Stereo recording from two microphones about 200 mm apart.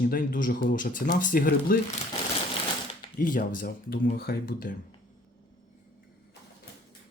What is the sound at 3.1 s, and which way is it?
Speech, 45° left (ahead or behind).